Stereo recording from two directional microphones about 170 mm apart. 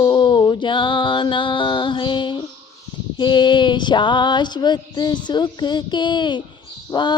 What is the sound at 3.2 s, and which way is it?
Female singing, 25° left (ahead or behind).